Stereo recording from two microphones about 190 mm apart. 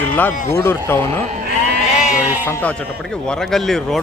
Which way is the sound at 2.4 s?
10° left (ahead or behind).